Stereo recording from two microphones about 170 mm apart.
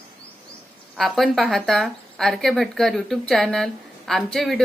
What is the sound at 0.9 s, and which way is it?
Speech, centre (ahead or behind).